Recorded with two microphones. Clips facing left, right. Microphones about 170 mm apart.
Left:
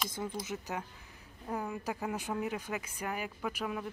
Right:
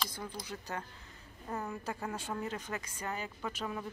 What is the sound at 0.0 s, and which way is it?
A woman's voice, 20° left (ahead or behind).